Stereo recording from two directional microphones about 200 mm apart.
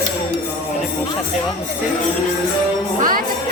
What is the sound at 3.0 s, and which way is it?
Speech, 45° right (ahead or behind).